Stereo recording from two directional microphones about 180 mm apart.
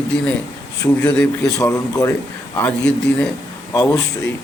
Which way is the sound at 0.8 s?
10° left (ahead or behind).